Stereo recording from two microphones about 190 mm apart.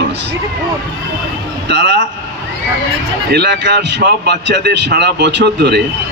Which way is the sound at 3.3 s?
65° right (ahead or behind).